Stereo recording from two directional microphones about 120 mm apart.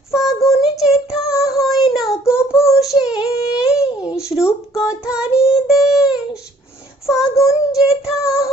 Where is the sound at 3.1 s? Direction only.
5° right (ahead or behind).